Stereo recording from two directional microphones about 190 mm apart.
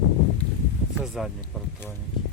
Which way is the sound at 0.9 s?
Centre (ahead or behind).